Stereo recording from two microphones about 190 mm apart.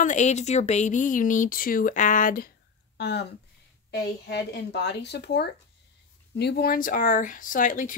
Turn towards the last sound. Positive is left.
turn(degrees=45)  # may be behind; listen again after turning